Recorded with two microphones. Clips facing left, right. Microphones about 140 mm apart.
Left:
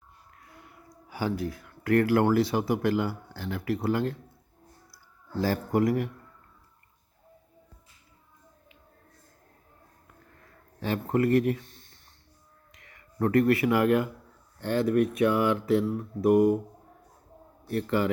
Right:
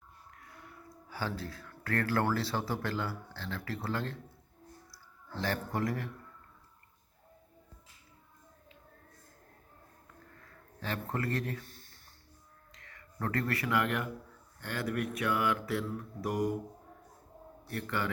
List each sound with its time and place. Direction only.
0.3 s speech: 20° left (ahead or behind)
5.5 s speech: 25° left (ahead or behind)
10.8 s speech: 25° left (ahead or behind)
11.6 s speech: centre (ahead or behind)
13.1 s speech: 25° left (ahead or behind)
17.7 s speech: 25° left (ahead or behind)